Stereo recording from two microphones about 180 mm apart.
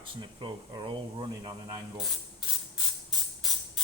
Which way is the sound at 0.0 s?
25° right (ahead or behind).